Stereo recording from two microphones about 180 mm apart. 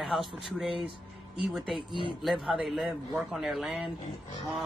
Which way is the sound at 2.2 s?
Centre (ahead or behind).